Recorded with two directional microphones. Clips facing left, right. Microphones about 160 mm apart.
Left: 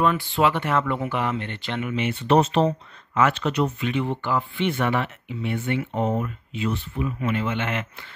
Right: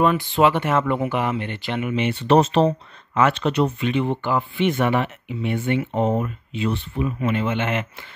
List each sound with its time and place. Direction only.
0.0 s speech: 20° right (ahead or behind)
3.2 s speech: 25° right (ahead or behind)